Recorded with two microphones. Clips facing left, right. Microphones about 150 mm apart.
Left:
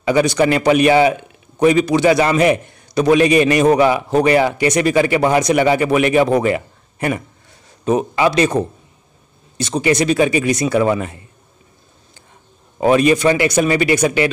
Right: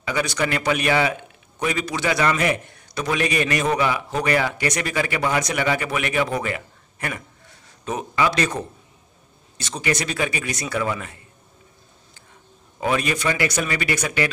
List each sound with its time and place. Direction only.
0.0 s a man's voice: 25° left (ahead or behind)
3.6 s a man's voice: 40° left (ahead or behind); by 8.5 s 20° left (ahead or behind)
9.6 s a man's voice: 20° left (ahead or behind)
13.4 s a man's voice: 25° left (ahead or behind)